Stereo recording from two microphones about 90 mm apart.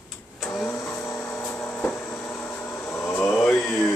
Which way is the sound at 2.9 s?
20° left (ahead or behind).